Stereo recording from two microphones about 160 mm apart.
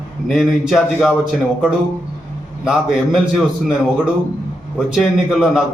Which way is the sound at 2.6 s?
5° right (ahead or behind).